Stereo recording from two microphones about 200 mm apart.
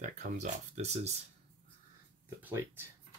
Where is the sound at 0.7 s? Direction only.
35° right (ahead or behind).